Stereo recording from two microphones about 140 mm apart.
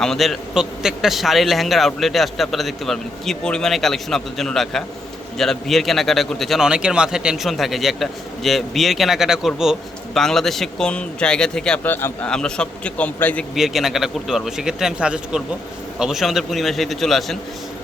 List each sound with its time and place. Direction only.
0.0 s a man's voice: centre (ahead or behind)
13.6 s a man's voice: centre (ahead or behind)